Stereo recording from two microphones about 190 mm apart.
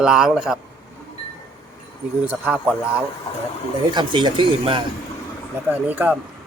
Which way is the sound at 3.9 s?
25° right (ahead or behind).